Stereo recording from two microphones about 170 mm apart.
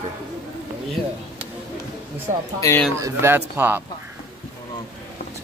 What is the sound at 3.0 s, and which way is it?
Speech, 15° right (ahead or behind).